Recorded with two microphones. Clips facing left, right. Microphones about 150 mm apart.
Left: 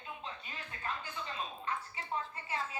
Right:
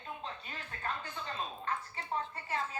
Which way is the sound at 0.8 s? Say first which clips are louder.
Right 1 dB; 35° right (ahead or behind).